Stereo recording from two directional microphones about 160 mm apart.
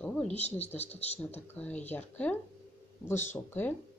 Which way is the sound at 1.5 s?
10° left (ahead or behind).